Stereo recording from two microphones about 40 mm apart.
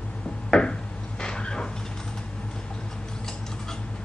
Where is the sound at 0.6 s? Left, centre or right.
Left.